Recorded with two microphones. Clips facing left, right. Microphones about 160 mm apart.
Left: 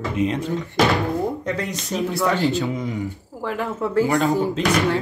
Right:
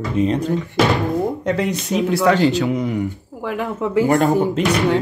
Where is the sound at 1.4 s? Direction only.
70° right (ahead or behind).